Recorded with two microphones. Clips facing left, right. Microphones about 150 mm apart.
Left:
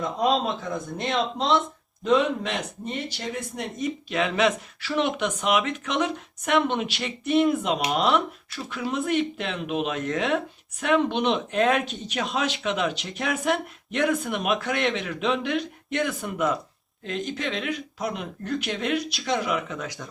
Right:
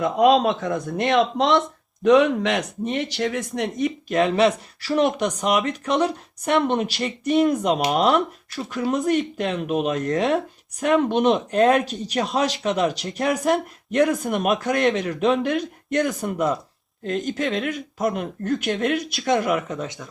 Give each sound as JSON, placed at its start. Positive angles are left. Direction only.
{"t": 0.0, "sound": "speech", "side_deg": -75}
{"t": 3.5, "sound": "speech", "side_deg": -80}
{"t": 4.1, "sound": "speech", "side_deg": -40}